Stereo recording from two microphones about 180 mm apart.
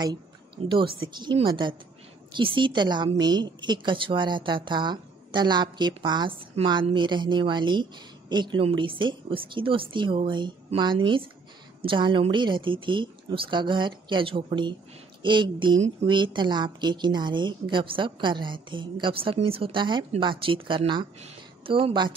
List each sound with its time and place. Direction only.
0.8 s a woman's voice: 90° right
1.4 s a woman's voice: 25° right (ahead or behind)